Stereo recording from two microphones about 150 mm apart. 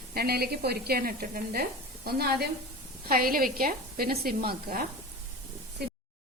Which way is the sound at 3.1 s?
75° right (ahead or behind).